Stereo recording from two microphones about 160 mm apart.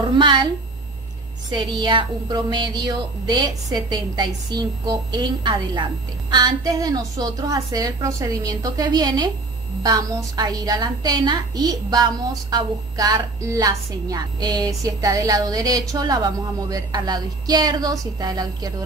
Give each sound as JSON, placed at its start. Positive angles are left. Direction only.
{"t": 0.2, "sound": "a woman's voice", "side_deg": -30}
{"t": 1.5, "sound": "a woman's voice", "side_deg": -30}